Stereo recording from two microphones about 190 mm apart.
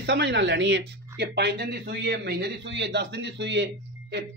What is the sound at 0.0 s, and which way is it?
A man's voice, 65° right (ahead or behind).